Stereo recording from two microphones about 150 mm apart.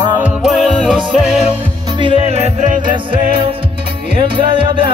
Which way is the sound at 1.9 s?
35° right (ahead or behind).